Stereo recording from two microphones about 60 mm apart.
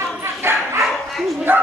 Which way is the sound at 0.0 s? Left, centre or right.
Right.